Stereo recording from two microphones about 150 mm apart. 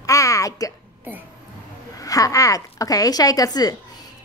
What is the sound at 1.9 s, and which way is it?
Speech, 25° left (ahead or behind).